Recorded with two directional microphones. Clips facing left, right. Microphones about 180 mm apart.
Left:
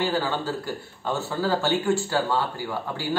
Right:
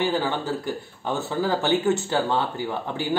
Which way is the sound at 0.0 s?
20° right (ahead or behind).